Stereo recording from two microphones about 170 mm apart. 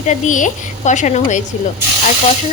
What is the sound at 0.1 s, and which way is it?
Speech, 50° left (ahead or behind).